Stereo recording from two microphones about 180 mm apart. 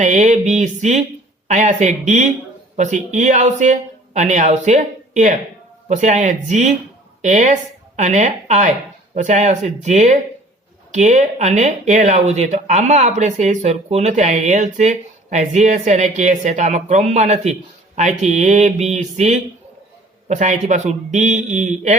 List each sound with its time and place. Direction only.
0.0 s speech: 40° right (ahead or behind)